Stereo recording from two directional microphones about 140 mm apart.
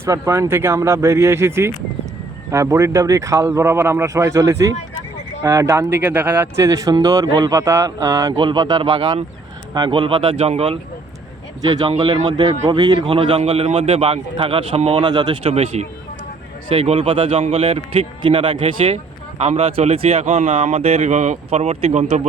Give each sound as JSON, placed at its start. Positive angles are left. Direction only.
{"t": 0.0, "sound": "a man's voice", "side_deg": -20}
{"t": 11.7, "sound": "a man's voice", "side_deg": -30}
{"t": 15.0, "sound": "speech", "side_deg": -35}